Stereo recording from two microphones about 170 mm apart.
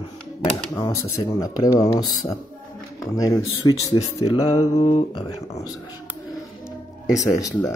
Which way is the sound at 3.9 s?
30° left (ahead or behind).